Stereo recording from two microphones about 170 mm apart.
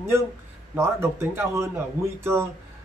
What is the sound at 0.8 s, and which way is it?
Speech, 15° right (ahead or behind).